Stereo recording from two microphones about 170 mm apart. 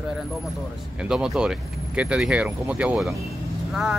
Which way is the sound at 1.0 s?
5° right (ahead or behind).